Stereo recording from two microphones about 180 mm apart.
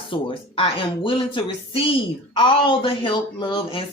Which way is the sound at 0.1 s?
30° left (ahead or behind).